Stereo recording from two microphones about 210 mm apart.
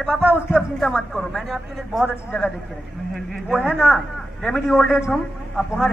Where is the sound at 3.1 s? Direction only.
5° right (ahead or behind).